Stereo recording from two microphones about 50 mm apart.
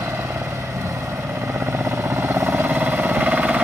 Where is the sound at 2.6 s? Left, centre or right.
Right.